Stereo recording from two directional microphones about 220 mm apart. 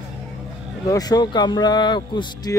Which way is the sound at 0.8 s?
15° left (ahead or behind).